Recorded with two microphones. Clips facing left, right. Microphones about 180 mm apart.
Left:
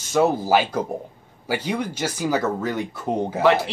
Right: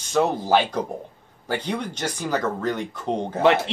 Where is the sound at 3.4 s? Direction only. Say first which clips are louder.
Even; 25° right (ahead or behind).